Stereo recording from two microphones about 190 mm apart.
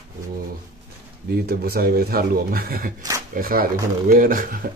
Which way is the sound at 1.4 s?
55° right (ahead or behind).